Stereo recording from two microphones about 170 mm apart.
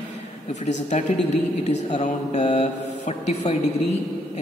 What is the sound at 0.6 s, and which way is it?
Speech, 45° left (ahead or behind).